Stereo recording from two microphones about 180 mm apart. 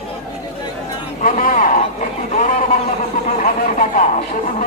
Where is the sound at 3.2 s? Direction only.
45° left (ahead or behind).